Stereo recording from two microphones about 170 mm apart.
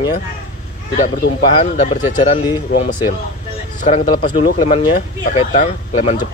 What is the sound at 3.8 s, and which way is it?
Speech, 45° left (ahead or behind).